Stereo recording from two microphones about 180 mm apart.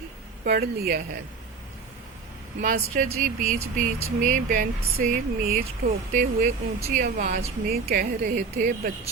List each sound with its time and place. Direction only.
0.4 s speech: 55° right (ahead or behind)
2.6 s speech: 50° right (ahead or behind)